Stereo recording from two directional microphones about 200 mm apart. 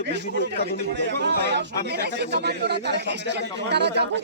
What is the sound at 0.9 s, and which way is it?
Speech, 60° right (ahead or behind).